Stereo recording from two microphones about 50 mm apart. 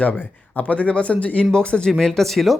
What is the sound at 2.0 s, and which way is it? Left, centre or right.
Speech, centre.